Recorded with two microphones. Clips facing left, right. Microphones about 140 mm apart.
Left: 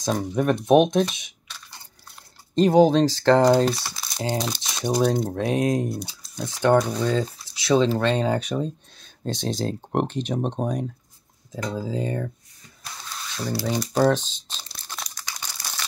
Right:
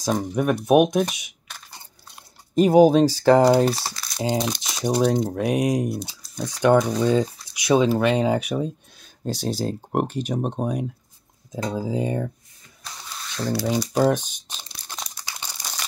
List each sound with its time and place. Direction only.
0.0 s speech: 10° right (ahead or behind)
2.5 s speech: 10° right (ahead or behind)
4.6 s crumpling: 15° right (ahead or behind)
5.1 s speech: centre (ahead or behind)
5.4 s speech: 15° right (ahead or behind)
13.7 s crumpling: 10° right (ahead or behind)